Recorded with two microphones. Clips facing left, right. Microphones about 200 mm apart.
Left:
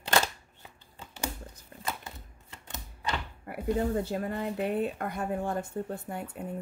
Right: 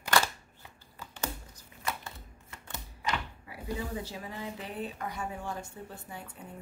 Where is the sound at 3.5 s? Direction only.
55° left (ahead or behind).